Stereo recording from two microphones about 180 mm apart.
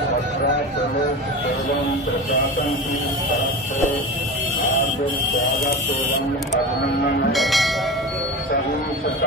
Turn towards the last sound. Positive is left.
turn(degrees=0)  # may be behind; listen again after turning